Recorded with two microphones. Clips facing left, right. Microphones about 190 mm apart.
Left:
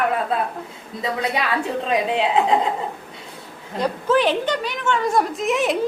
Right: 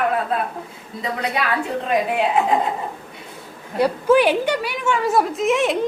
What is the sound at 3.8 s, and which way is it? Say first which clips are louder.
A woman's voice: right 4 dB; 10° right (ahead or behind).